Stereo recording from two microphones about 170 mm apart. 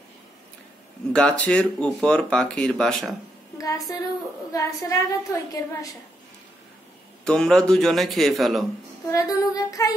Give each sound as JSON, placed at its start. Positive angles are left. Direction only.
{"t": 1.1, "sound": "speech", "side_deg": 5}
{"t": 3.5, "sound": "female singing", "side_deg": 20}
{"t": 4.5, "sound": "a woman's voice", "side_deg": 20}
{"t": 7.2, "sound": "speech", "side_deg": 5}
{"t": 9.1, "sound": "a woman's voice", "side_deg": 20}